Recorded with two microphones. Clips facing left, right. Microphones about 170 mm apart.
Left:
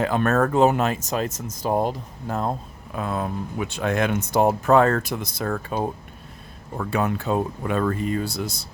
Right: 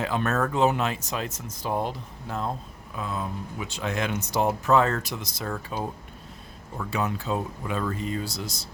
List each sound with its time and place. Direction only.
0.0 s speech: 50° left (ahead or behind)
2.9 s speech: 55° left (ahead or behind)